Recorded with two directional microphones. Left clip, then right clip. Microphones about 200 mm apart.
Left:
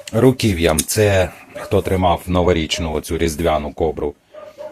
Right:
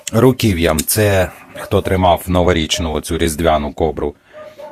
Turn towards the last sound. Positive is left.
turn(degrees=-30)  # may be behind; listen again after turning